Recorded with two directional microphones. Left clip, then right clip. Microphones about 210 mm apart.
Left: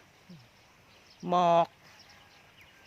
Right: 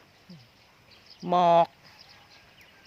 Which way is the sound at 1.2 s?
5° right (ahead or behind).